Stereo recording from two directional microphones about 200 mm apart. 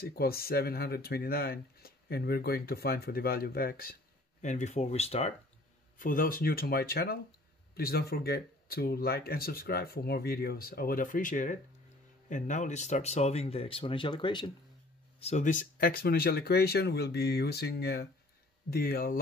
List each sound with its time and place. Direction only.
0.1 s speech: 50° left (ahead or behind)
4.4 s speech: 35° left (ahead or behind)
5.9 s speech: 45° left (ahead or behind); by 14.5 s 25° left (ahead or behind)
15.1 s speech: 35° left (ahead or behind)